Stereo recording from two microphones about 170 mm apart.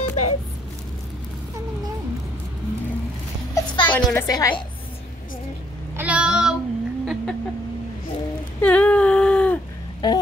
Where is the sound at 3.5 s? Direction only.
30° left (ahead or behind).